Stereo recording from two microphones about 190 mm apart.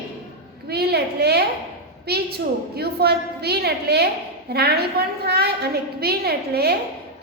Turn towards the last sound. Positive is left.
turn(degrees=-55)  # may be behind; listen again after turning